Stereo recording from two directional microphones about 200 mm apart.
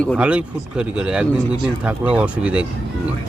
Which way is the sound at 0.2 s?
5° right (ahead or behind).